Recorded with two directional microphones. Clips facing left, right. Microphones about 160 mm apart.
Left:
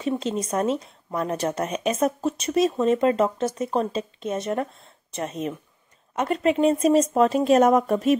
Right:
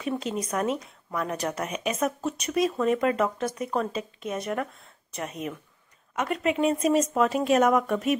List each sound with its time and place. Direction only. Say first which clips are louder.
0.2 s a woman's voice: left 4 dB; 25° left (ahead or behind)